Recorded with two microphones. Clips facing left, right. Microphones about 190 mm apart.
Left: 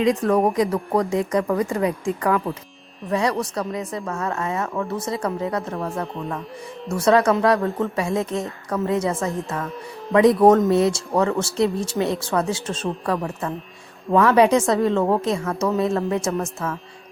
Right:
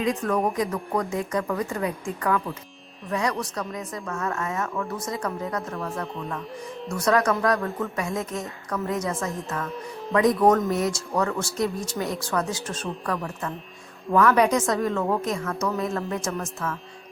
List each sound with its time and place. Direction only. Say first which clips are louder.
0.0 s speech: left 6 dB; 35° left (ahead or behind)